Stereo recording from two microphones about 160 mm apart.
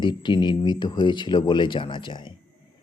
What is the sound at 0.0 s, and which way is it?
A man's voice, 30° left (ahead or behind).